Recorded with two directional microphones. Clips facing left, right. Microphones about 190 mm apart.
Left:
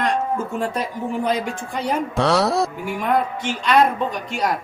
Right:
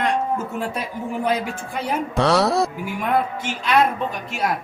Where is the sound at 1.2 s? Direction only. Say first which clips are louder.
Even; 5° right (ahead or behind).